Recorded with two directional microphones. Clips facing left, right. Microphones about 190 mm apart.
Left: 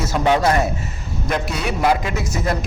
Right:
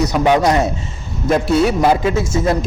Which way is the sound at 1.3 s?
30° right (ahead or behind).